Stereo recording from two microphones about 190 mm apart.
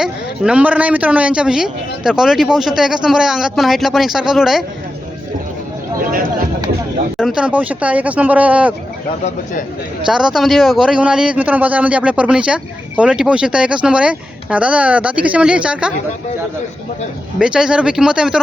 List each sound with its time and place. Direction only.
0.0 s speech: 5° right (ahead or behind)
6.1 s speech: 50° right (ahead or behind)
7.2 s speech: 5° right (ahead or behind)
10.1 s speech: centre (ahead or behind)
17.3 s speech: 5° right (ahead or behind)